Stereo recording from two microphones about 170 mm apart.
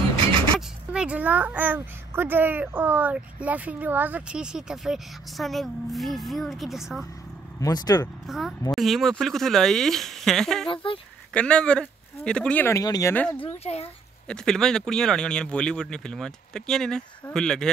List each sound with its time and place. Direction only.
0.6 s a child's voice: 5° right (ahead or behind)
7.6 s speech: 20° left (ahead or behind)
8.3 s speech: centre (ahead or behind)
10.7 s speech: 30° left (ahead or behind)
11.3 s speech: 5° left (ahead or behind)
13.7 s speech: 40° left (ahead or behind)
14.2 s speech: 5° left (ahead or behind)